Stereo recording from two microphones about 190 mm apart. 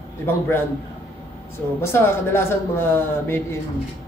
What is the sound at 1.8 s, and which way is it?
A man's voice, 15° left (ahead or behind).